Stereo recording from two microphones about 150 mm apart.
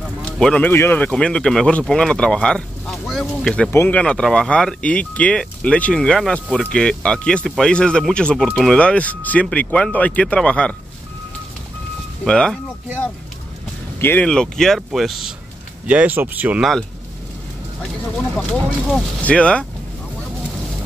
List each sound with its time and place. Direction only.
0.2 s speech: 5° left (ahead or behind)
12.3 s speech: 5° left (ahead or behind)
13.9 s speech: 15° left (ahead or behind); by 16.6 s 10° right (ahead or behind)
18.3 s speech: centre (ahead or behind)